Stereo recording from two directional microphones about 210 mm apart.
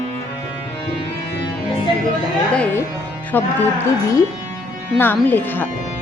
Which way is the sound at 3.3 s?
10° left (ahead or behind).